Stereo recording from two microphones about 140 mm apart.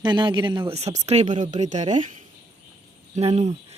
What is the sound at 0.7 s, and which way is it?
Speech, 50° right (ahead or behind).